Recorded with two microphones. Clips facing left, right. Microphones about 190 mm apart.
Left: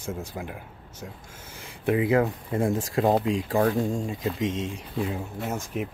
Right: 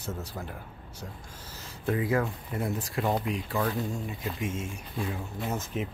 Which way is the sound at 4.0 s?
20° left (ahead or behind).